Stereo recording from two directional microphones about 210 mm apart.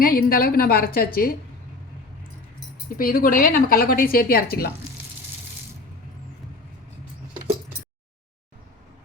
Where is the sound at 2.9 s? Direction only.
45° left (ahead or behind).